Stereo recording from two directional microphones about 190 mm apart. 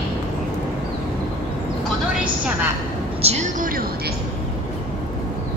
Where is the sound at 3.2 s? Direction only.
35° right (ahead or behind).